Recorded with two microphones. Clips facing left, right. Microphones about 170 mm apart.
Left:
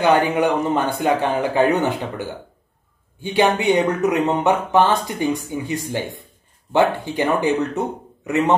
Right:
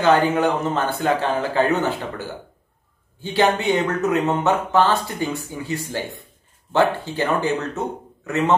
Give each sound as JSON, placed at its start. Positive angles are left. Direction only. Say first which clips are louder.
{"t": 0.0, "sound": "speech", "louder": "even", "side_deg": 15}